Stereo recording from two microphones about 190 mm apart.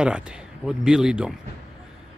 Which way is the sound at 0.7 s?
5° right (ahead or behind).